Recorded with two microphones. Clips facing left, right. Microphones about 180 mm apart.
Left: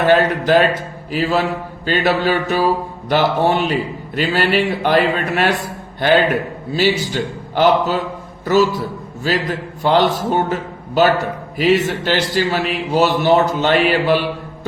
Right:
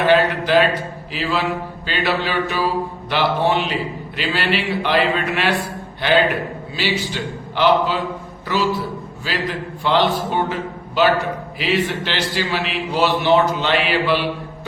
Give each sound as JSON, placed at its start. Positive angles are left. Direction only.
{"t": 0.0, "sound": "a man's voice", "side_deg": 45}
{"t": 9.2, "sound": "a man's voice", "side_deg": 45}